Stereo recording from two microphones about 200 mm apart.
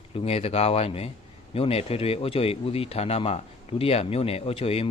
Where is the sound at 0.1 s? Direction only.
30° left (ahead or behind).